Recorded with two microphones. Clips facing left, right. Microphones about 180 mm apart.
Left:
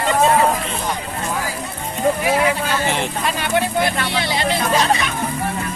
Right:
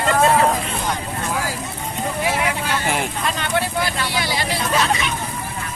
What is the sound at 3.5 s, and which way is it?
Speech, 20° left (ahead or behind).